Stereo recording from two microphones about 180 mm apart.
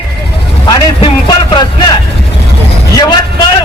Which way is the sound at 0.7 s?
25° left (ahead or behind).